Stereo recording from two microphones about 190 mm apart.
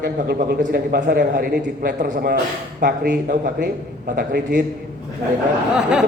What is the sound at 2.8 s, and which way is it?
Speech, 60° right (ahead or behind).